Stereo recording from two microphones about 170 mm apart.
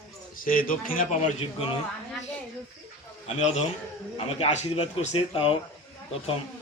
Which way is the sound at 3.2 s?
40° left (ahead or behind).